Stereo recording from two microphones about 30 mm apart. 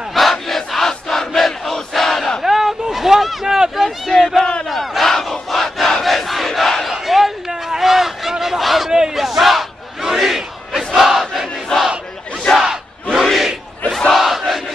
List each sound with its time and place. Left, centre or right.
0.1 s crowd: centre
2.4 s a sound: centre
3.8 s a sound: centre
4.6 s battle cry: centre
6.0 s crowd: centre
6.9 s battle cry: centre
7.7 s a sound: centre
8.9 s battle cry: centre
9.2 s battle cry: centre
11.7 s battle cry: left
13.1 s battle cry: centre
14.1 s crowd: centre